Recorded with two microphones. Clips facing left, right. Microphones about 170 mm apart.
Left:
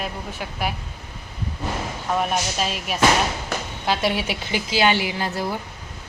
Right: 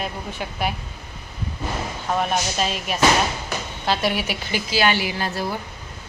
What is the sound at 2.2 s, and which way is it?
Speech, 5° left (ahead or behind).